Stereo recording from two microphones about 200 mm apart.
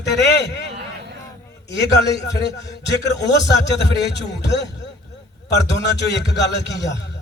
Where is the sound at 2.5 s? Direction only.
60° left (ahead or behind).